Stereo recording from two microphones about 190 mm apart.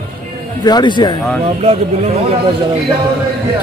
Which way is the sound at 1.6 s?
30° right (ahead or behind).